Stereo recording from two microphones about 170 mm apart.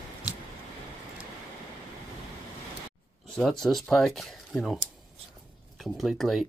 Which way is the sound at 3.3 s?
Centre (ahead or behind).